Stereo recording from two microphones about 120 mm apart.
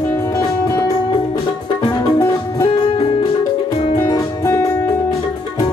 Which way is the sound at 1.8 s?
30° left (ahead or behind).